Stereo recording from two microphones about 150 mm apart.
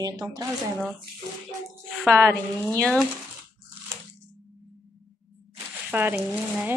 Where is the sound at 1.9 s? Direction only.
5° left (ahead or behind).